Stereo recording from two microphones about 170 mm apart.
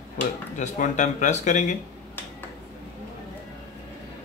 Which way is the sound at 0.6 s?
45° left (ahead or behind).